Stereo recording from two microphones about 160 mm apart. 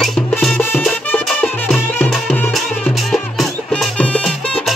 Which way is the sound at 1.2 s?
5° left (ahead or behind).